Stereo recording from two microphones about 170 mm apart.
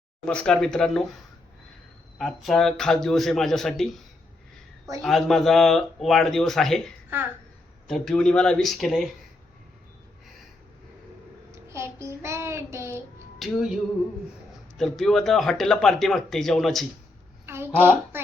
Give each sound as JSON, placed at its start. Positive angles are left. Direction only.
{"t": 0.3, "sound": "speech", "side_deg": 5}
{"t": 2.1, "sound": "speech", "side_deg": 0}
{"t": 5.0, "sound": "speech", "side_deg": 0}
{"t": 11.5, "sound": "child singing", "side_deg": -15}
{"t": 13.4, "sound": "speech", "side_deg": 0}
{"t": 14.8, "sound": "speech", "side_deg": 0}
{"t": 17.4, "sound": "a sound", "side_deg": -15}